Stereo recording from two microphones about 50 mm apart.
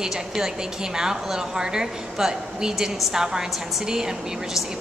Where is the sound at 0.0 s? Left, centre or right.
Centre.